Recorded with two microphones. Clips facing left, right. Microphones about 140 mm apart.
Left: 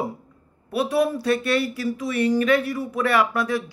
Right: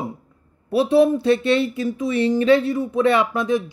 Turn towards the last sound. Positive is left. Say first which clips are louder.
# right 3 dB
turn(degrees=-20)  # may be behind; listen again after turning